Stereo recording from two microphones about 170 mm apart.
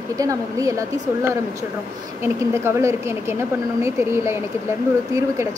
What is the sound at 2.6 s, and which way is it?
A woman's voice, 15° right (ahead or behind).